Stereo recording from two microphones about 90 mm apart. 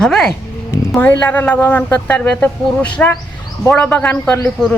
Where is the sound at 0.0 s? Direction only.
5° left (ahead or behind).